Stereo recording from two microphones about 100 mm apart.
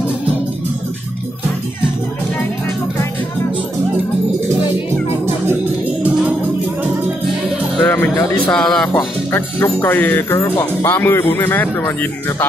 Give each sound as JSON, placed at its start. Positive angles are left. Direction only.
{"t": 7.8, "sound": "music", "side_deg": 15}
{"t": 8.5, "sound": "speech", "side_deg": 5}
{"t": 8.9, "sound": "speech", "side_deg": 20}